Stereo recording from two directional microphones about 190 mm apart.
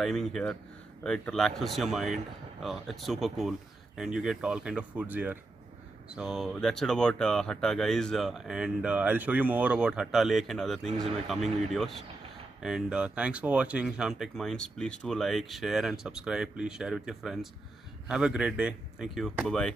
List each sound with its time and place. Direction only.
0.0 s speech: centre (ahead or behind)